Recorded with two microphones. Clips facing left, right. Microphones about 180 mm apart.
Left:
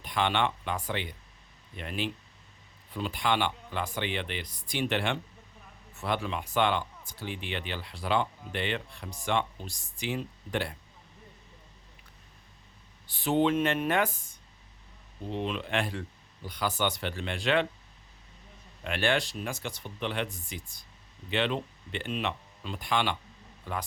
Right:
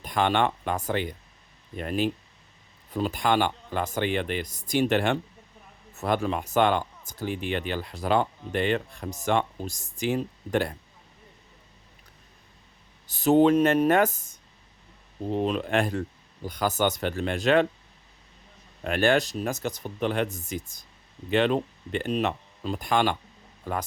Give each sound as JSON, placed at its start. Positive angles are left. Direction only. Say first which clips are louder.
{"t": 0.0, "sound": "speech", "louder": "right 4 dB", "side_deg": -45}
{"t": 13.1, "sound": "speech", "louder": "right 7 dB", "side_deg": -45}
{"t": 18.8, "sound": "speech", "louder": "right 6 dB", "side_deg": -45}